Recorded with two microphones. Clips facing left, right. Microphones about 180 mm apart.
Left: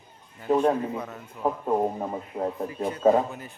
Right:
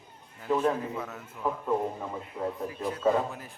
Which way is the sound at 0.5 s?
35° left (ahead or behind).